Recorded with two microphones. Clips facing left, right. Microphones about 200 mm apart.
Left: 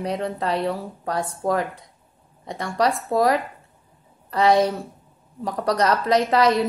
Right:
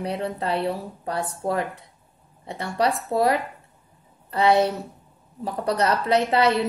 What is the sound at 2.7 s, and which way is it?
A woman's voice, 30° right (ahead or behind).